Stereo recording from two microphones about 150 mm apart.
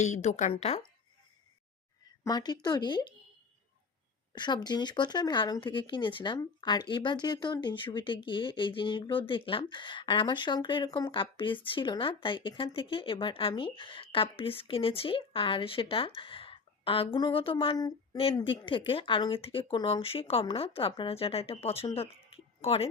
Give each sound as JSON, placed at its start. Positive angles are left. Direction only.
{"t": 0.0, "sound": "a woman's voice", "side_deg": 50}
{"t": 2.2, "sound": "speech", "side_deg": 25}
{"t": 4.3, "sound": "speech", "side_deg": 30}